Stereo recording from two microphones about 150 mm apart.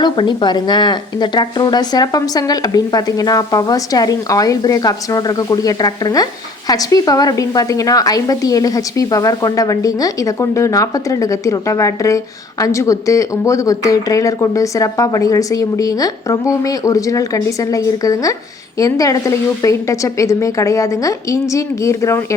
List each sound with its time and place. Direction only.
0.0 s a woman's voice: 30° left (ahead or behind)